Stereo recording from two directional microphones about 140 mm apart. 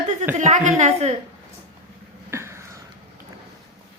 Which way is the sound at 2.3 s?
20° right (ahead or behind).